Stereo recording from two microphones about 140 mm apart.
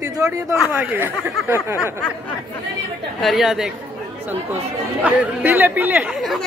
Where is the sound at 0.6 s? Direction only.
10° right (ahead or behind).